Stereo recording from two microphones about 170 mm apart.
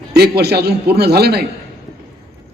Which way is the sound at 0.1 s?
70° right (ahead or behind).